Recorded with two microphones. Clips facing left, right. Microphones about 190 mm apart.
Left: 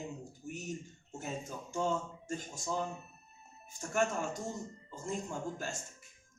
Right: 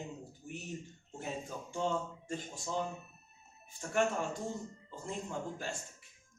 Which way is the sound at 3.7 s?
45° left (ahead or behind).